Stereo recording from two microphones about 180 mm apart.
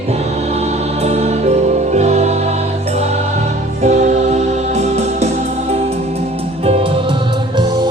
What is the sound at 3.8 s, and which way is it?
Music, 40° right (ahead or behind).